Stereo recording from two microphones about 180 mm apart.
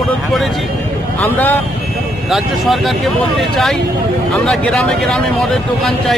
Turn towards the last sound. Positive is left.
turn(degrees=0)  # may be behind; listen again after turning